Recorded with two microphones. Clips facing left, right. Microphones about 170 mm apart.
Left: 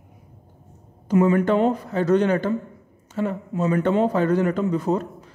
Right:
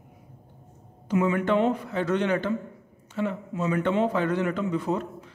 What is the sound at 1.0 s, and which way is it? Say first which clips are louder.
A man's voice: left 5 dB; 40° left (ahead or behind).